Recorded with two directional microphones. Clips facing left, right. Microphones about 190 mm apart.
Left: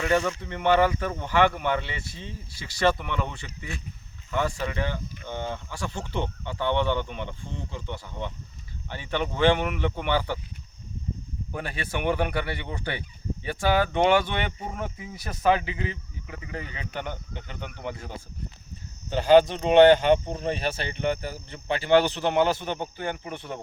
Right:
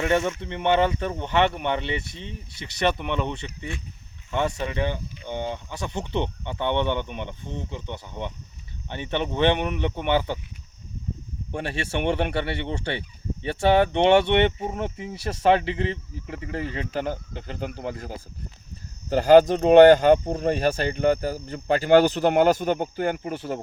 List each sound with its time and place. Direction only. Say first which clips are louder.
0.0 s speech: right 1 dB; 25° right (ahead or behind)
11.5 s speech: right 4 dB; 30° right (ahead or behind)